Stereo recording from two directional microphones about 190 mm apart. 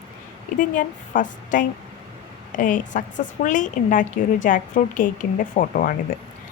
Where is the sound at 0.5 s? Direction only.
45° left (ahead or behind).